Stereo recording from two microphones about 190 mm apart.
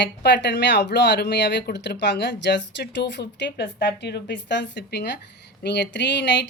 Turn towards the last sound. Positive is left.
turn(degrees=70)  # may be behind; listen again after turning